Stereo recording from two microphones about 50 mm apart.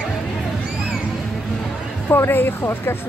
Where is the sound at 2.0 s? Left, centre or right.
Left.